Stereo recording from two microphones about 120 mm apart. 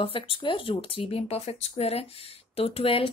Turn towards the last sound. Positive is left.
turn(degrees=55)  # may be behind; listen again after turning